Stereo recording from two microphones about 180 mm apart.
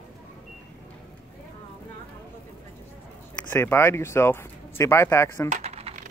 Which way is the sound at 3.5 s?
15° left (ahead or behind).